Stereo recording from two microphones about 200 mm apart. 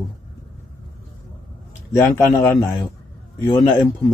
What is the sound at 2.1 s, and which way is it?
A man's voice, 15° left (ahead or behind).